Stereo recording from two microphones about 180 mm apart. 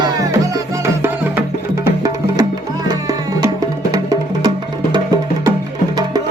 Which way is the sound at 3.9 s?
20° right (ahead or behind).